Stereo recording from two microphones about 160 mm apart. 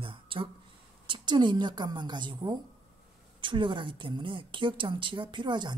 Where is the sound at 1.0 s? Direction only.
30° right (ahead or behind).